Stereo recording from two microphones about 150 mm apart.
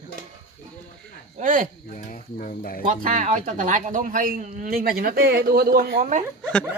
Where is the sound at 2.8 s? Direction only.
60° right (ahead or behind); by 6.1 s 85° right.